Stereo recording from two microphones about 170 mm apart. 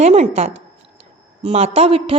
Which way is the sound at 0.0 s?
40° right (ahead or behind).